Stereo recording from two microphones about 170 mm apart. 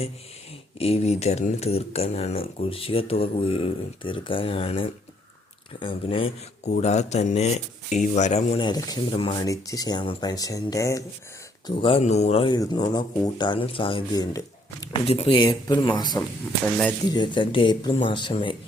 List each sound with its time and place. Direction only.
0.8 s speech: 35° left (ahead or behind)
8.6 s speech: 25° left (ahead or behind)
9.5 s speech: 20° left (ahead or behind)
11.6 s speech: 30° left (ahead or behind)
12.5 s speech: 25° left (ahead or behind)
15.0 s speech: 35° left (ahead or behind)